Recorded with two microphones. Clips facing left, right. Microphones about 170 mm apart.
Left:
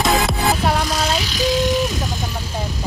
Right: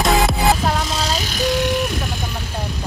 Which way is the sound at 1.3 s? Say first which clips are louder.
Even; 60° right (ahead or behind).